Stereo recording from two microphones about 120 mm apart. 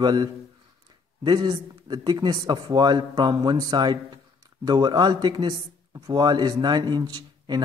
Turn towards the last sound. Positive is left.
turn(degrees=-35)  # may be behind; listen again after turning